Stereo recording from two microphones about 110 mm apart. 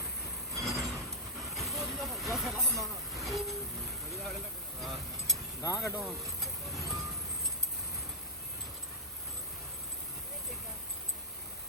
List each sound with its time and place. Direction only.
0.5 s vehicle: centre (ahead or behind)
4.8 s vehicle: centre (ahead or behind)
5.6 s speech: 25° left (ahead or behind)
6.0 s vehicle: centre (ahead or behind)